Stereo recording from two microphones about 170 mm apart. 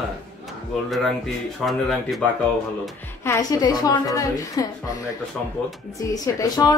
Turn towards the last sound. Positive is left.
turn(degrees=20)  # may be behind; listen again after turning